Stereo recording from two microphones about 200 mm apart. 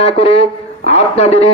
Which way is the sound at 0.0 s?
30° left (ahead or behind).